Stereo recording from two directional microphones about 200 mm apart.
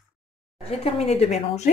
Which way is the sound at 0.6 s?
30° left (ahead or behind).